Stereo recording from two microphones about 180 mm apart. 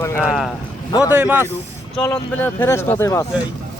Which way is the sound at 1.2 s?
10° right (ahead or behind).